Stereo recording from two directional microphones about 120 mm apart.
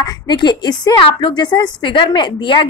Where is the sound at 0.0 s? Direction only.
35° left (ahead or behind).